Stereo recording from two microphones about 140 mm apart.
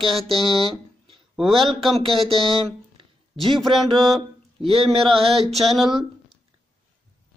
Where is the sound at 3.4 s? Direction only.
Centre (ahead or behind).